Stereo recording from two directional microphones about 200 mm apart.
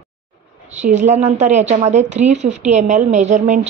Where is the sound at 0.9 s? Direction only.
35° right (ahead or behind).